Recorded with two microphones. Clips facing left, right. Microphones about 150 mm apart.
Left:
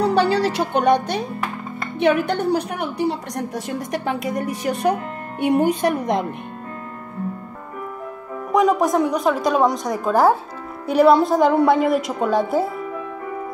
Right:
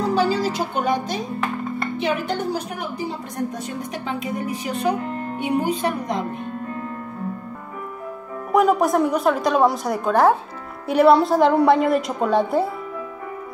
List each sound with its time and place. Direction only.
0.0 s music: 70° left (ahead or behind)
2.0 s a woman's voice: 60° left (ahead or behind)
8.5 s a woman's voice: 5° right (ahead or behind)